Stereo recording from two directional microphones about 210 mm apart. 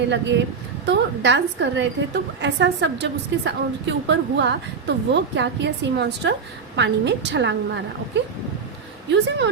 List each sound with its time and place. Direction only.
0.1 s a woman's voice: 55° right (ahead or behind)